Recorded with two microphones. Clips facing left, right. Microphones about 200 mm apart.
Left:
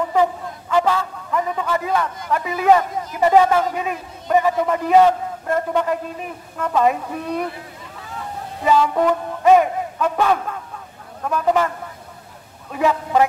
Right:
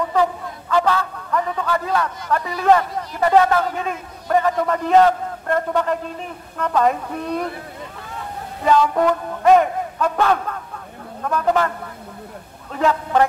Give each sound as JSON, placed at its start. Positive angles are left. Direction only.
{"t": 0.1, "sound": "a sound", "side_deg": 15}
{"t": 1.5, "sound": "a man's voice", "side_deg": 15}
{"t": 8.6, "sound": "a man's voice", "side_deg": 0}
{"t": 12.7, "sound": "a man's voice", "side_deg": 10}